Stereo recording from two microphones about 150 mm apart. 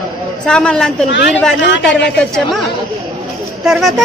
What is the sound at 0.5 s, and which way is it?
Speech, 5° left (ahead or behind).